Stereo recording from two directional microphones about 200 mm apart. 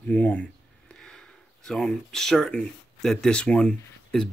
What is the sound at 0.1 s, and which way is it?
Speech, 5° left (ahead or behind).